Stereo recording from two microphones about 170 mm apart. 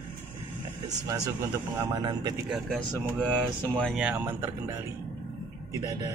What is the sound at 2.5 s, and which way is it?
Speech, 5° left (ahead or behind).